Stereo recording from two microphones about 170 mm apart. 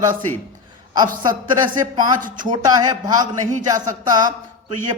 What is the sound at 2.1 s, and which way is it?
Speech, 50° right (ahead or behind).